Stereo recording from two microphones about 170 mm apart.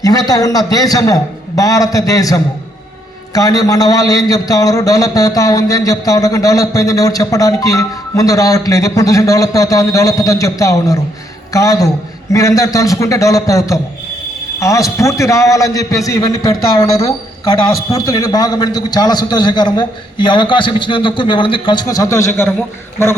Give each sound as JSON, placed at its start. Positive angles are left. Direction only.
{"t": 0.0, "sound": "a man's voice", "side_deg": 20}